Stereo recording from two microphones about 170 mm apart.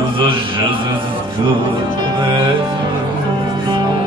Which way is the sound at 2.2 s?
25° right (ahead or behind).